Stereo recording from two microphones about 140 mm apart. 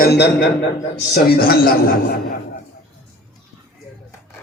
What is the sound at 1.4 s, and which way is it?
Speech, 90° left.